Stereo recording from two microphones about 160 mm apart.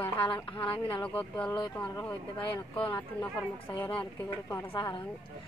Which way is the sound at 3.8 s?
10° left (ahead or behind).